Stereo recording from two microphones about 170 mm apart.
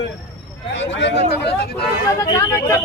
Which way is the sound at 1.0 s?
80° left.